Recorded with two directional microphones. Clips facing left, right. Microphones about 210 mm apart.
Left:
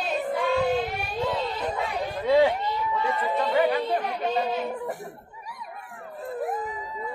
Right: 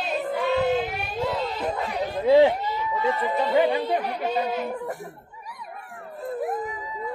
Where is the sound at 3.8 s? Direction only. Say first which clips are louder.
Right 1 dB; 10° right (ahead or behind).